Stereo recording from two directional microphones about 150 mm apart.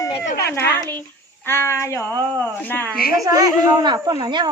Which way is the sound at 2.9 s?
80° left.